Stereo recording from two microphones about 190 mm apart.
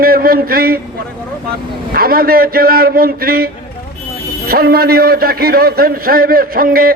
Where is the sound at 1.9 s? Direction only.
50° right (ahead or behind).